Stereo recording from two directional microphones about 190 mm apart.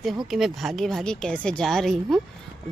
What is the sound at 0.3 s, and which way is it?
Speech, centre (ahead or behind).